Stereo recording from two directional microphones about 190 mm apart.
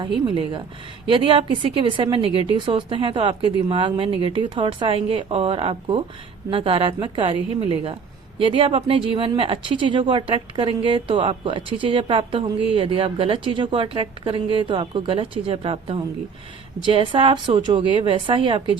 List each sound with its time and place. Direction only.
0.0 s speech: 25° right (ahead or behind)